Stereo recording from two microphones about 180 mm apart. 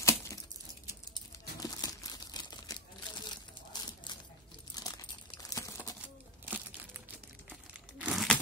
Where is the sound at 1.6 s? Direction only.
20° left (ahead or behind).